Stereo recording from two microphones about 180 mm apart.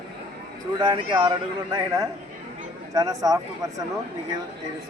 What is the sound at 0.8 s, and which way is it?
Speech, 25° right (ahead or behind).